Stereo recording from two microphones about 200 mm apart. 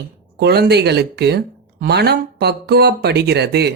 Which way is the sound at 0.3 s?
55° right (ahead or behind).